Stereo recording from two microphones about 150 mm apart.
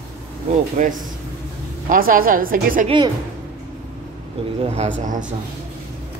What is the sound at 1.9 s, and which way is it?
Speech, 70° right (ahead or behind).